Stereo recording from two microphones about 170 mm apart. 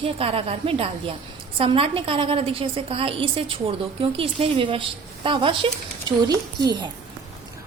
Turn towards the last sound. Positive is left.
turn(degrees=-25)  # may be behind; listen again after turning